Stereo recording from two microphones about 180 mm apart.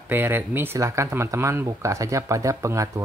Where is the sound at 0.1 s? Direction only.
10° right (ahead or behind).